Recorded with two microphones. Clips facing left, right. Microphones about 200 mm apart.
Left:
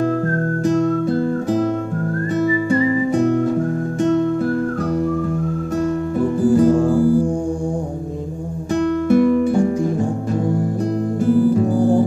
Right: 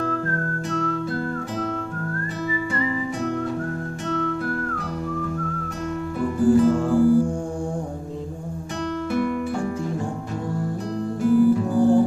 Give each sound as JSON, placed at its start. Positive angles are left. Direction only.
{"t": 6.6, "sound": "music", "side_deg": 35}
{"t": 9.1, "sound": "music", "side_deg": 40}